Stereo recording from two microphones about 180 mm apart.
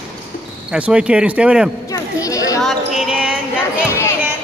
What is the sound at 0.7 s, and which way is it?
Speech, 5° right (ahead or behind).